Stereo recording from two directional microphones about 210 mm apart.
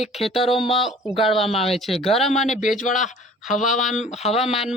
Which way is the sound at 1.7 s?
Centre (ahead or behind).